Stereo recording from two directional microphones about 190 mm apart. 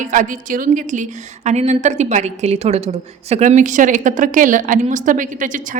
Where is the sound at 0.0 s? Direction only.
45° right (ahead or behind).